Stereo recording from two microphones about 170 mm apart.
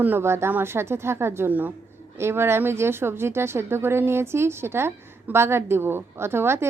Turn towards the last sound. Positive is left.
turn(degrees=-15)  # may be behind; listen again after turning